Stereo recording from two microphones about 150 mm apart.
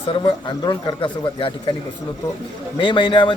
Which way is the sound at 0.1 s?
35° left (ahead or behind).